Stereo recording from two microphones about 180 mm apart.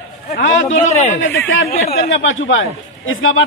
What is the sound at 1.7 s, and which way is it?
Speech, 50° left (ahead or behind).